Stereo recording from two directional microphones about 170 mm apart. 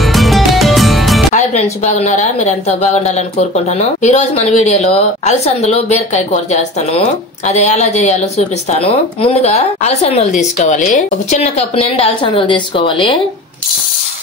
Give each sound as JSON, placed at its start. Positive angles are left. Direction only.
{"t": 0.0, "sound": "music", "side_deg": 0}
{"t": 1.3, "sound": "a woman's voice", "side_deg": 45}